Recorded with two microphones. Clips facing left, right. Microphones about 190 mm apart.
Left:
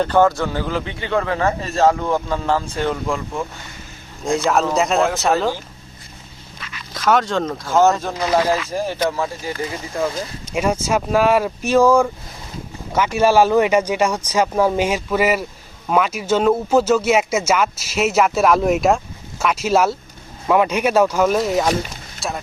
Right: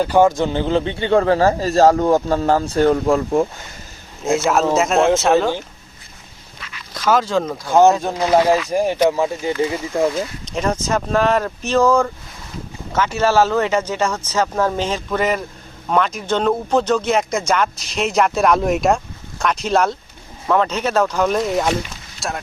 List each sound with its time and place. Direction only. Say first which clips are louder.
0.0 s speech: right 1 dB; 15° right (ahead or behind); by 3.4 s 40° right (ahead or behind)
4.4 s speech: right 1 dB; centre (ahead or behind)
6.9 s speech: right 1 dB; centre (ahead or behind)
7.7 s speech: right 3 dB; 15° right (ahead or behind)
10.4 s speech: left 4 dB; 10° left (ahead or behind)